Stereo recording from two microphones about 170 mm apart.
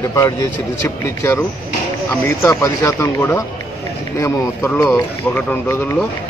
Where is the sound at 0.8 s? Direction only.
15° left (ahead or behind).